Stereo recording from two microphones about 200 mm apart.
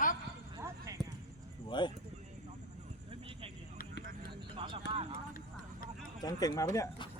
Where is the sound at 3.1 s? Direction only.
25° right (ahead or behind).